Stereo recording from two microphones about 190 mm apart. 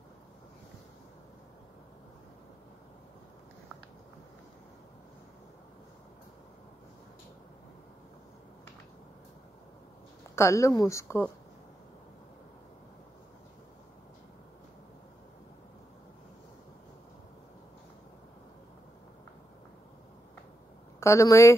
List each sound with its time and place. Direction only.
10.3 s a woman's voice: 15° left (ahead or behind)
21.0 s speech: 15° left (ahead or behind)